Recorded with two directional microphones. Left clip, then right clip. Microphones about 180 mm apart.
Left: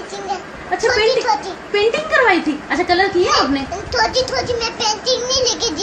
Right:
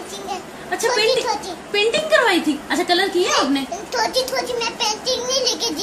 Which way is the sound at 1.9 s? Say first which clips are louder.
Left 2 dB; 20° right (ahead or behind).